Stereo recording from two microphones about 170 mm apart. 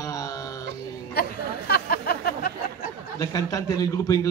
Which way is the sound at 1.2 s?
65° left (ahead or behind).